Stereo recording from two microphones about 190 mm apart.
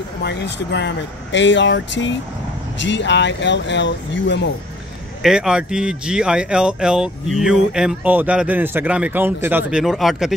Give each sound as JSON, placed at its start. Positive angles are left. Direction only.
{"t": 0.2, "sound": "speech", "side_deg": 65}
{"t": 5.2, "sound": "speech", "side_deg": -5}